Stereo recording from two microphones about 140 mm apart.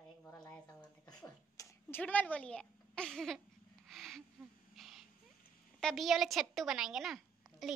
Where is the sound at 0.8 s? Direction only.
30° left (ahead or behind).